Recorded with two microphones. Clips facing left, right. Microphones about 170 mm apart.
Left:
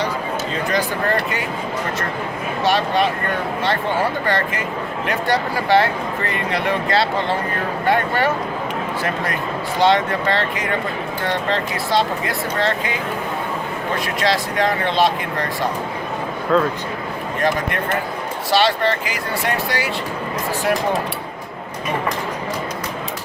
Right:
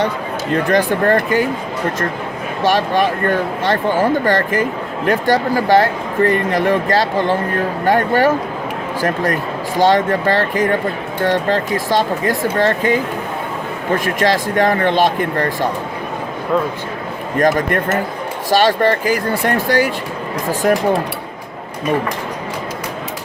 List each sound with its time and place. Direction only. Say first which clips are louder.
0.5 s speech: right 9 dB; 55° right (ahead or behind)
3.2 s speech: right 5 dB; 50° right (ahead or behind)
9.8 s speech: right 3 dB; 45° right (ahead or behind)
14.0 s speech: right 3 dB; 50° right (ahead or behind)
17.4 s speech: right 6 dB; 45° right (ahead or behind)